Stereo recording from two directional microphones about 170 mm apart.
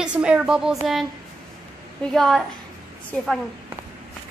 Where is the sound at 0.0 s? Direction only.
5° right (ahead or behind).